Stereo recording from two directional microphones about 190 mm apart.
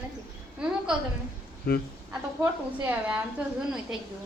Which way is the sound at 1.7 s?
55° left (ahead or behind).